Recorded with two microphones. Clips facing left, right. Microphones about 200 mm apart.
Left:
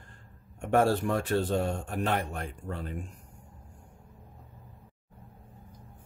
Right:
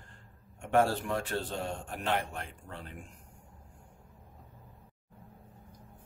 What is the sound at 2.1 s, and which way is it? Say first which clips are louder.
Speech: left 2 dB; 45° left (ahead or behind).